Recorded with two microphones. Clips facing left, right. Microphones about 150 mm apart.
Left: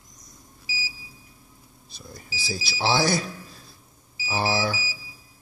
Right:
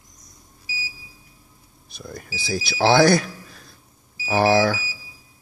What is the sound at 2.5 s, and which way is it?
Speech, 55° right (ahead or behind).